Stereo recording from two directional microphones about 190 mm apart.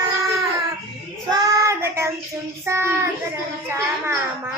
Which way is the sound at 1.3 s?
20° right (ahead or behind).